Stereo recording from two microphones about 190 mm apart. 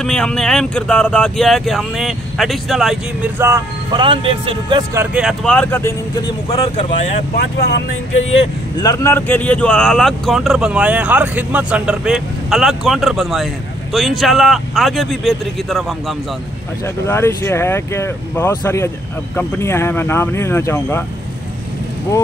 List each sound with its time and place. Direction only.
0.0 s speech: 5° left (ahead or behind)
3.3 s speech: 15° right (ahead or behind)
3.9 s speech: 25° right (ahead or behind)
4.9 s speech: 5° right (ahead or behind); by 6.6 s 20° left (ahead or behind)
7.3 s speech: 60° left (ahead or behind)
8.8 s speech: 15° left (ahead or behind)
17.1 s speech: 15° left (ahead or behind)